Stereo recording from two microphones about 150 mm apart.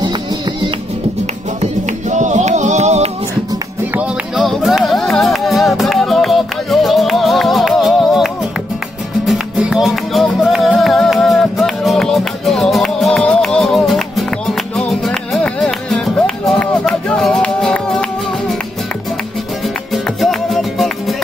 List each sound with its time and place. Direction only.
1.6 s music: 55° right (ahead or behind)
3.9 s music: 10° right (ahead or behind)
19.9 s music: centre (ahead or behind)